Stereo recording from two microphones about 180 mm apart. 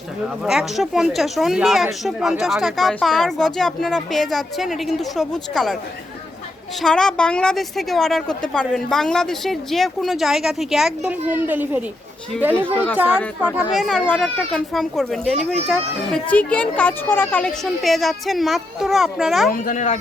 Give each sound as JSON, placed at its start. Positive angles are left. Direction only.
{"t": 0.4, "sound": "speech", "side_deg": 0}
{"t": 6.8, "sound": "speech", "side_deg": 5}
{"t": 13.4, "sound": "speech", "side_deg": -5}
{"t": 19.5, "sound": "speech", "side_deg": 50}